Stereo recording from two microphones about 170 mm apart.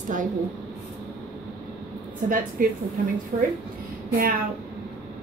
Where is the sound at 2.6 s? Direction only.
55° right (ahead or behind).